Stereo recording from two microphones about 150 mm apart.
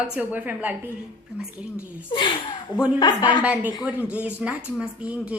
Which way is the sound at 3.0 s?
30° left (ahead or behind).